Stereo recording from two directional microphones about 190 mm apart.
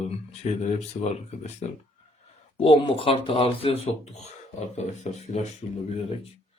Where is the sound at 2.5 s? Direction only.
30° left (ahead or behind).